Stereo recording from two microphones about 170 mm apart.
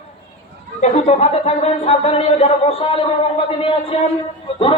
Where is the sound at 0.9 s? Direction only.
40° left (ahead or behind).